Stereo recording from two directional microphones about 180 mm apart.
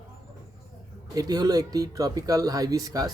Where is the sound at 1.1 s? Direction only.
20° right (ahead or behind).